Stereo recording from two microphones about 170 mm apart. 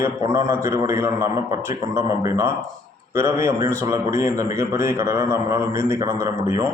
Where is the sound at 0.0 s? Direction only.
15° right (ahead or behind).